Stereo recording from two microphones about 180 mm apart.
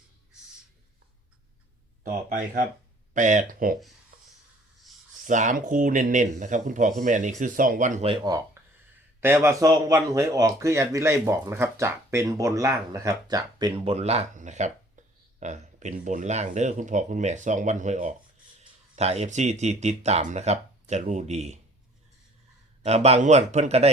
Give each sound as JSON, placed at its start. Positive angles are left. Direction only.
{"t": 3.2, "sound": "speech", "side_deg": -45}
{"t": 5.2, "sound": "speech", "side_deg": -45}
{"t": 8.1, "sound": "speech", "side_deg": -25}
{"t": 8.6, "sound": "a sound", "side_deg": -15}
{"t": 9.2, "sound": "speech", "side_deg": -15}
{"t": 22.8, "sound": "speech", "side_deg": -35}